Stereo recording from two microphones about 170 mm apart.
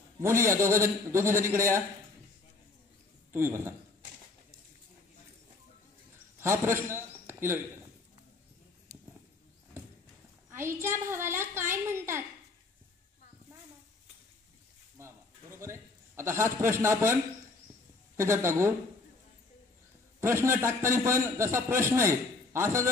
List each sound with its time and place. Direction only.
0.2 s a man's voice: 15° right (ahead or behind)
3.3 s a man's voice: 15° right (ahead or behind)
6.4 s a man's voice: 15° right (ahead or behind)
10.5 s a man's voice: 15° right (ahead or behind)
15.0 s a sound: 15° right (ahead or behind)
18.1 s a man's voice: 15° right (ahead or behind)
20.2 s a man's voice: 15° right (ahead or behind)